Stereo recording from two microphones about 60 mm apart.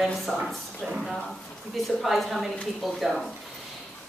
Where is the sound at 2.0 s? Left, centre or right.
Centre.